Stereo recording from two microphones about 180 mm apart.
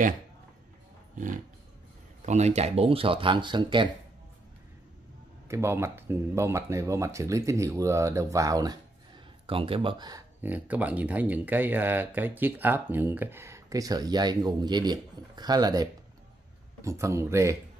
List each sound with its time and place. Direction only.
1.1 s dog: 45° right (ahead or behind)
2.2 s speech: 40° right (ahead or behind)
5.5 s speech: 15° right (ahead or behind)
9.5 s speech: 30° right (ahead or behind)
10.4 s speech: 10° right (ahead or behind)